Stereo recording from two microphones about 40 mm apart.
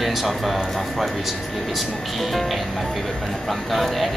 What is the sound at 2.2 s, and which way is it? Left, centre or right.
Speech, centre.